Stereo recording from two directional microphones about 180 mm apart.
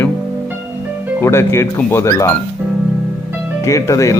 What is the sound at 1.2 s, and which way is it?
Speech, 15° left (ahead or behind).